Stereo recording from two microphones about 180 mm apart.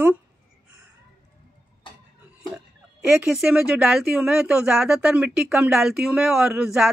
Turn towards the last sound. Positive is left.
turn(degrees=-5)  # may be behind; listen again after turning